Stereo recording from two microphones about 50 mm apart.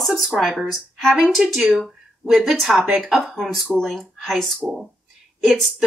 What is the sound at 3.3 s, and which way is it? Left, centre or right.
Speech, centre.